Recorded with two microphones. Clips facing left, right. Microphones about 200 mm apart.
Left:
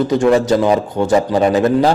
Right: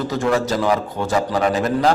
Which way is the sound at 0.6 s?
20° left (ahead or behind).